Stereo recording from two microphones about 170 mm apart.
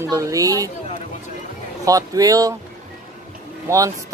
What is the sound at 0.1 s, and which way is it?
Speech, 20° right (ahead or behind).